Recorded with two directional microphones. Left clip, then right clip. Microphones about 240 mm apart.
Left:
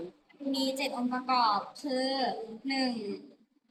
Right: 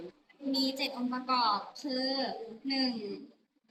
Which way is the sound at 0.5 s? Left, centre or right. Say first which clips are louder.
Left 1 dB; centre.